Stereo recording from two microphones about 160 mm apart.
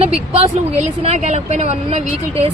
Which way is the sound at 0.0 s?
40° right (ahead or behind).